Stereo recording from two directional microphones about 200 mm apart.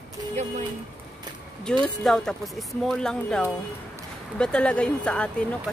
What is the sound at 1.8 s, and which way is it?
Speech, 5° left (ahead or behind).